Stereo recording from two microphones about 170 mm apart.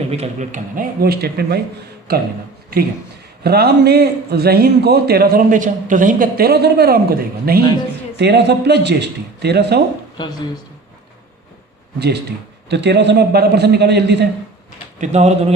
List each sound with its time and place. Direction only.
0.1 s a man's voice: 40° right (ahead or behind); by 2.2 s 65° right (ahead or behind)
3.4 s a man's voice: 70° right (ahead or behind)
8.1 s speech: 85° right
10.2 s speech: 25° left (ahead or behind)
11.9 s speech: 75° right (ahead or behind)
12.6 s speech: 90° right
15.0 s speech: 40° right (ahead or behind)